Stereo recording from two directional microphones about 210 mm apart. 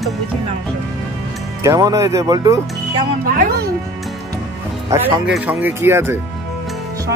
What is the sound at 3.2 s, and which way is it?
Speech, 45° right (ahead or behind).